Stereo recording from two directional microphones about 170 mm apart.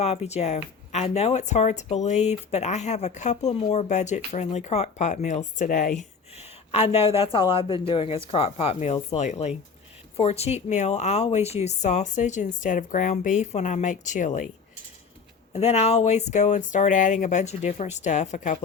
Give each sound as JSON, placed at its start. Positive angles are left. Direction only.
{"t": 0.0, "sound": "speech", "side_deg": 40}
{"t": 15.5, "sound": "speech", "side_deg": 40}